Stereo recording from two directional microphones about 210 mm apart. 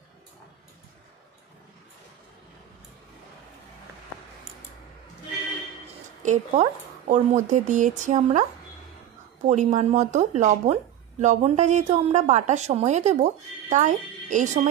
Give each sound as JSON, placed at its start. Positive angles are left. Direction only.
{"t": 6.2, "sound": "speech", "side_deg": -30}
{"t": 9.5, "sound": "speech", "side_deg": -35}